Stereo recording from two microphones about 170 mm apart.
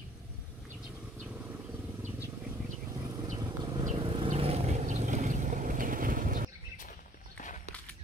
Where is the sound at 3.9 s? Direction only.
30° right (ahead or behind); by 6.4 s 55° right (ahead or behind).